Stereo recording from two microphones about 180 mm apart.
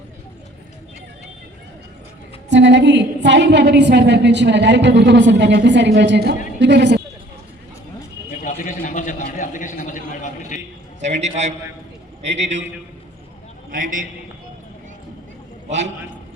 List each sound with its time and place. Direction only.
2.5 s a woman's voice: 80° right
8.4 s a sound: 45° left (ahead or behind)
11.0 s a man's voice: 40° right (ahead or behind)
13.7 s a man's voice: 50° right (ahead or behind)